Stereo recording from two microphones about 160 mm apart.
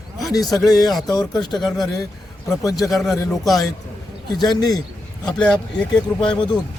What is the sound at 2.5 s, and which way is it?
Speech, 20° left (ahead or behind).